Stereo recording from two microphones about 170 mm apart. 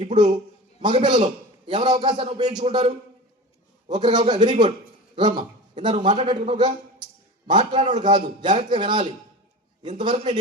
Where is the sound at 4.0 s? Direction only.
25° right (ahead or behind).